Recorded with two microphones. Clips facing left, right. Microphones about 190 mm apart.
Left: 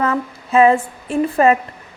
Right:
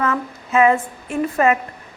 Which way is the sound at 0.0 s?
30° left (ahead or behind).